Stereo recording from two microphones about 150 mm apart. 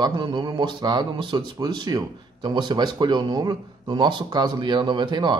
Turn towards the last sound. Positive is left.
turn(degrees=-30)  # may be behind; listen again after turning